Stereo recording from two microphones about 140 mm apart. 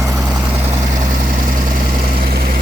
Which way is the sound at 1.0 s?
70° right (ahead or behind).